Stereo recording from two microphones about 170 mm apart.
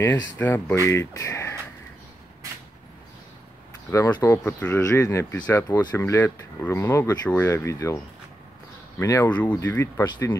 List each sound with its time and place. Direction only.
0.4 s speech: 10° left (ahead or behind)
3.9 s speech: 20° left (ahead or behind)
9.0 s speech: 20° left (ahead or behind)